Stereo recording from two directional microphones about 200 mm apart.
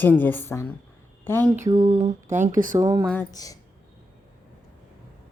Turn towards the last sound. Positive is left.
turn(degrees=20)  # may be behind; listen again after turning